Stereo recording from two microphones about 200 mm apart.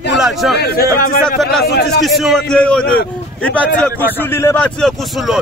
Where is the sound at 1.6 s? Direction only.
55° left (ahead or behind).